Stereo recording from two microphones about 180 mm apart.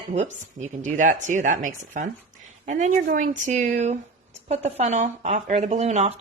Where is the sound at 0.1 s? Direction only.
40° right (ahead or behind).